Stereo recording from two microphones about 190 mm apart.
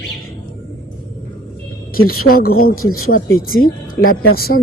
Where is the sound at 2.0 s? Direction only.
50° left (ahead or behind).